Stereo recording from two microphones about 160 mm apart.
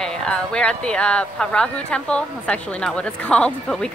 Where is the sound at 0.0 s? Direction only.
5° left (ahead or behind).